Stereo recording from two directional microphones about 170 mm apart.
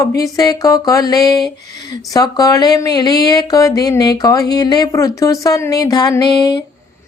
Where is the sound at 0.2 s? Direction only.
20° left (ahead or behind).